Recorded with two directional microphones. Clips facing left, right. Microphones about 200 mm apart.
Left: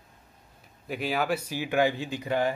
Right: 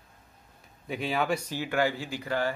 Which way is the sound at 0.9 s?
Centre (ahead or behind).